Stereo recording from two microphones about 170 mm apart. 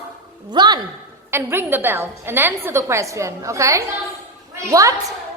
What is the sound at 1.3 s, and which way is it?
A woman's voice, 15° right (ahead or behind).